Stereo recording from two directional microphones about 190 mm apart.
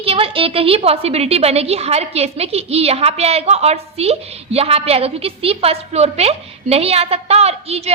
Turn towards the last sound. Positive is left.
turn(degrees=-35)  # may be behind; listen again after turning